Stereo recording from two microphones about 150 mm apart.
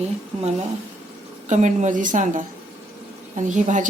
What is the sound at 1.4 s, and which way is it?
A woman's voice, 55° right (ahead or behind).